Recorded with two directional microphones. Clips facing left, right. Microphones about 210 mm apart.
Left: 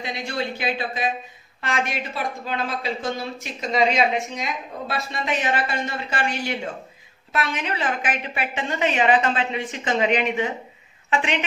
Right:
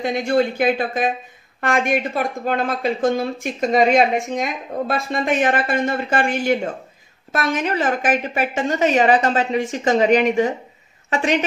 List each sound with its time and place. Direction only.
0.0 s a woman's voice: 50° right (ahead or behind)